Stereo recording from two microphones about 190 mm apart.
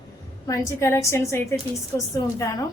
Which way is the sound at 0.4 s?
15° left (ahead or behind).